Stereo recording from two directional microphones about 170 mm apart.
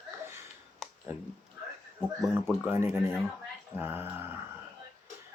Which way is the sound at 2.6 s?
15° right (ahead or behind).